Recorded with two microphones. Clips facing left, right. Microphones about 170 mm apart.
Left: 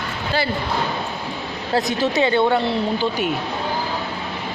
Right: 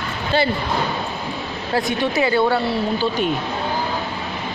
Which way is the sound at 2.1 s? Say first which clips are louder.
Left 1 dB; 20° left (ahead or behind).